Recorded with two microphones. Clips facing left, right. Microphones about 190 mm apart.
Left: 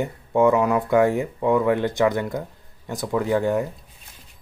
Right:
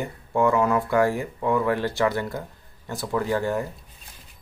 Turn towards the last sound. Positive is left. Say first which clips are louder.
# left 3 dB
turn(degrees=15)  # may be behind; listen again after turning